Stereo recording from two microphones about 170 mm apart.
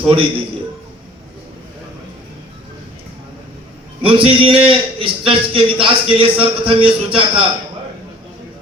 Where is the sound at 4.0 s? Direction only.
30° right (ahead or behind).